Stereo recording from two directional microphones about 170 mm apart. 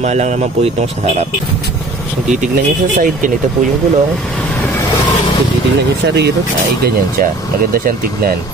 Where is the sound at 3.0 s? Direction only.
55° right (ahead or behind).